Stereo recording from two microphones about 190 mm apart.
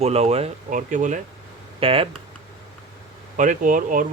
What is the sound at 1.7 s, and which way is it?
Speech, 30° right (ahead or behind).